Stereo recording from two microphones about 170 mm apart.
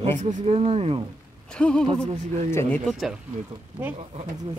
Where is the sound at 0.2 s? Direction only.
40° right (ahead or behind).